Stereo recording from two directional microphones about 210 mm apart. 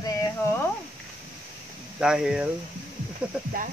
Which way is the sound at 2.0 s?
5° right (ahead or behind).